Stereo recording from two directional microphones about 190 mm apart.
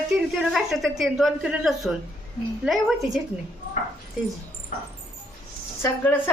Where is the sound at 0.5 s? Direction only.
Centre (ahead or behind).